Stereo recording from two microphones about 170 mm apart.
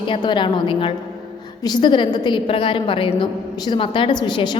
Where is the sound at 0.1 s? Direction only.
30° left (ahead or behind).